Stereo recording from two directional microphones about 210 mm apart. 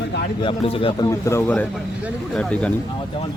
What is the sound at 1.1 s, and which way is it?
A man's voice, 15° left (ahead or behind).